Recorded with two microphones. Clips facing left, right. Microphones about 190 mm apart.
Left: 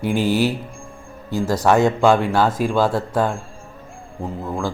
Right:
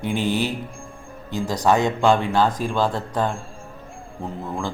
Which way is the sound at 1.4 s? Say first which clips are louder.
Left 2 dB; 15° right (ahead or behind).